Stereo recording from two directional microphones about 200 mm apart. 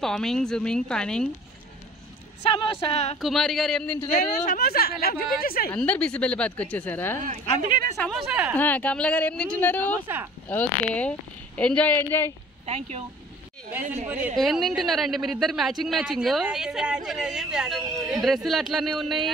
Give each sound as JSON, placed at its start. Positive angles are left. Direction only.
{"t": 0.0, "sound": "a woman's voice", "side_deg": 0}
{"t": 2.5, "sound": "a woman's voice", "side_deg": 25}
{"t": 3.2, "sound": "a woman's voice", "side_deg": 0}
{"t": 4.1, "sound": "a woman's voice", "side_deg": 40}
{"t": 5.7, "sound": "speech", "side_deg": 5}
{"t": 7.2, "sound": "speech", "side_deg": -45}
{"t": 8.0, "sound": "a woman's voice", "side_deg": 0}
{"t": 8.5, "sound": "speech", "side_deg": 10}
{"t": 12.6, "sound": "speech", "side_deg": -30}
{"t": 14.0, "sound": "a woman's voice", "side_deg": -5}